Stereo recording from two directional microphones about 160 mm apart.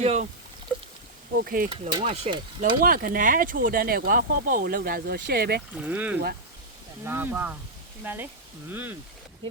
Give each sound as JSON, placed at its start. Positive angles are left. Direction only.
{"t": 0.0, "sound": "speech", "side_deg": -45}
{"t": 0.7, "sound": "a sound", "side_deg": 10}
{"t": 1.5, "sound": "speech", "side_deg": -65}
{"t": 1.7, "sound": "speech", "side_deg": -35}
{"t": 2.8, "sound": "speech", "side_deg": -65}
{"t": 5.7, "sound": "speech", "side_deg": -10}